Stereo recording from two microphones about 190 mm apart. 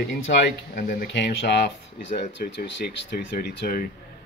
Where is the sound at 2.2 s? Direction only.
60° left (ahead or behind).